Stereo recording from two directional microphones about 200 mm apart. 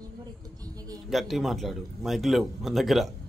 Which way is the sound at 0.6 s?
20° right (ahead or behind).